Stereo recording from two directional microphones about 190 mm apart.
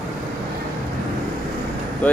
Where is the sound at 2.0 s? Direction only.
5° left (ahead or behind).